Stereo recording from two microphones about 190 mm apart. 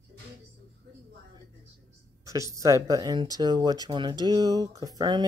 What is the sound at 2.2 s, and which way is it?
Speech, 15° right (ahead or behind).